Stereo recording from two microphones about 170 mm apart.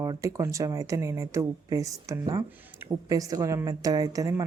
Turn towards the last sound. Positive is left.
turn(degrees=-20)  # may be behind; listen again after turning